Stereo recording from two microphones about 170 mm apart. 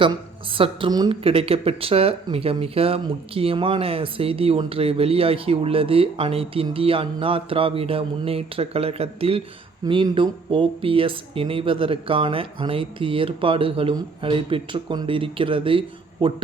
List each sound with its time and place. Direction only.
0.0 s speech: 30° right (ahead or behind)